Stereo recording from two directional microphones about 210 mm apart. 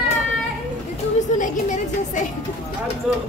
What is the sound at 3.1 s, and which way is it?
Speech, 5° right (ahead or behind).